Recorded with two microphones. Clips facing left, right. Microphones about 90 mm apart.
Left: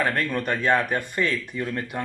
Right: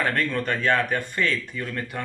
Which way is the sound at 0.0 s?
10° left (ahead or behind).